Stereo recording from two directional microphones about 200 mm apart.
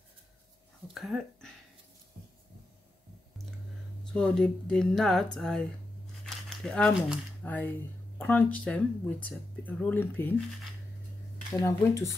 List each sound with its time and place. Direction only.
0.9 s speech: centre (ahead or behind)
4.1 s speech: 5° left (ahead or behind)
6.2 s crumpling: centre (ahead or behind)
7.4 s speech: 10° left (ahead or behind)
11.6 s speech: 15° left (ahead or behind)